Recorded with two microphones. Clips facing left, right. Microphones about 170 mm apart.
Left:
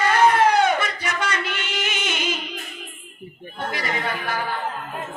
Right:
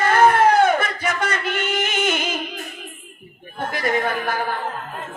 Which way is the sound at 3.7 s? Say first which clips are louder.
Right 5 dB; 50° right (ahead or behind).